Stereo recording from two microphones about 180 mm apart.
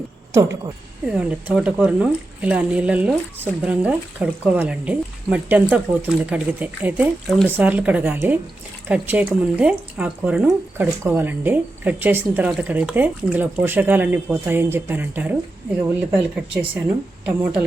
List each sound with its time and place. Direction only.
0.3 s speech: 15° right (ahead or behind)
1.0 s speech: 5° right (ahead or behind)